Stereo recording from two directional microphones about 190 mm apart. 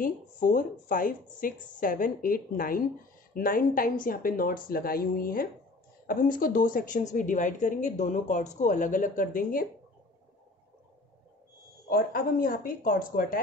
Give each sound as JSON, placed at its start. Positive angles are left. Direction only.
{"t": 0.0, "sound": "a woman's voice", "side_deg": 45}
{"t": 11.9, "sound": "a woman's voice", "side_deg": 50}